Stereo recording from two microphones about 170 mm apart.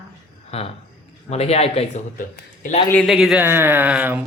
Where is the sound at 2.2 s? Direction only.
50° left (ahead or behind).